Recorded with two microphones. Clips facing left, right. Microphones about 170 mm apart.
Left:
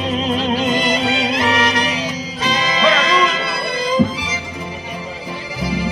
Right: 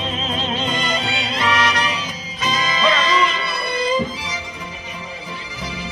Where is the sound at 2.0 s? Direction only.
80° left.